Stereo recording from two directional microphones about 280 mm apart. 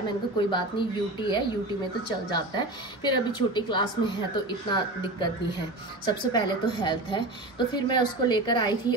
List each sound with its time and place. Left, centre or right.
0.5 s a woman's voice: centre